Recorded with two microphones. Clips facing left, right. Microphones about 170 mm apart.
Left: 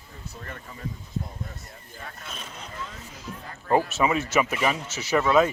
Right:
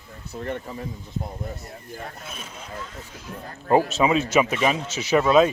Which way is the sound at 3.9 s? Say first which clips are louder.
Right 4 dB; 20° right (ahead or behind).